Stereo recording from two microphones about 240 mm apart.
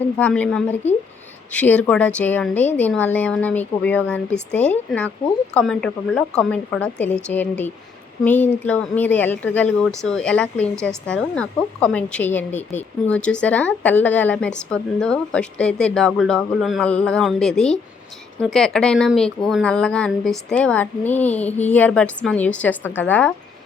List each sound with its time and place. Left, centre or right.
0.2 s a woman's voice: centre
12.5 s speech: left
13.1 s a woman's voice: centre